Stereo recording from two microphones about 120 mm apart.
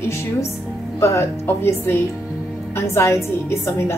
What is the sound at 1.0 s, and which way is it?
A woman's voice, 20° left (ahead or behind).